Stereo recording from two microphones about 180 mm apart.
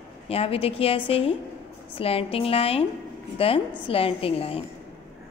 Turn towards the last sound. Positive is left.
turn(degrees=30)  # may be behind; listen again after turning